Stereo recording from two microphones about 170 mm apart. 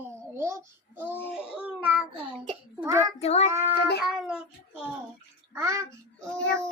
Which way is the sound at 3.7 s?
70° left (ahead or behind).